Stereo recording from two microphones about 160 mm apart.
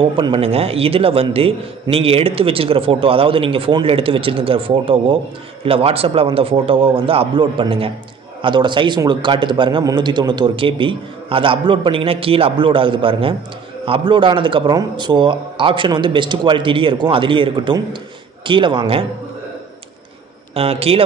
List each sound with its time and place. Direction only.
0.0 s a man's voice: 30° right (ahead or behind)
20.5 s a man's voice: 40° right (ahead or behind)